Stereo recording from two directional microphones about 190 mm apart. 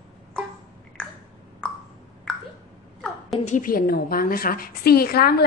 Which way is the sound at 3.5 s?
45° left (ahead or behind).